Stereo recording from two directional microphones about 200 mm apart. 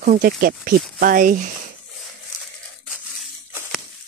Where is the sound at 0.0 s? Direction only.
45° right (ahead or behind).